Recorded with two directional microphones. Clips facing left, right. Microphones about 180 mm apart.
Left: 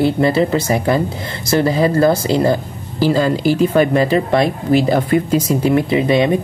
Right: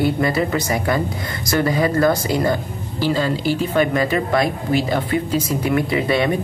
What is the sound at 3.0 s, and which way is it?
Speech, 40° left (ahead or behind).